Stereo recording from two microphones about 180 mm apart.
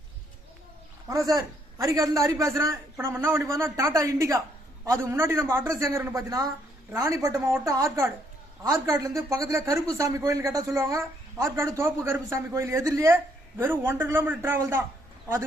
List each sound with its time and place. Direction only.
1.1 s a man's voice: 20° right (ahead or behind)